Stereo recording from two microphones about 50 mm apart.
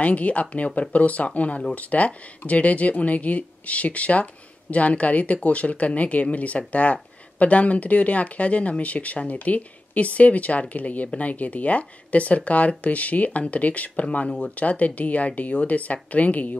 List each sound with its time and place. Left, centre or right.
0.0 s speech: left